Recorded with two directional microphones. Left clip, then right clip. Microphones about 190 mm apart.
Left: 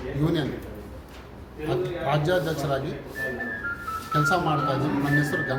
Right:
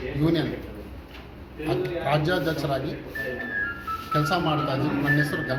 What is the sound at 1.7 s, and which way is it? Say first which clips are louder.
A man's voice: right 1 dB; 5° left (ahead or behind).